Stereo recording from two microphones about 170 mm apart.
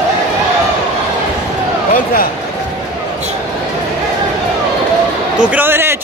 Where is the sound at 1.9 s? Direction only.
60° left (ahead or behind).